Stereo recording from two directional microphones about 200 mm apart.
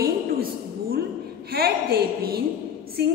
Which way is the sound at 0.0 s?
50° right (ahead or behind).